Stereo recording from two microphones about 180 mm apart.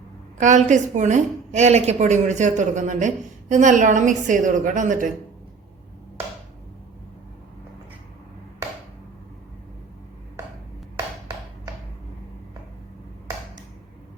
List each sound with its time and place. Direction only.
0.3 s a woman's voice: 45° right (ahead or behind)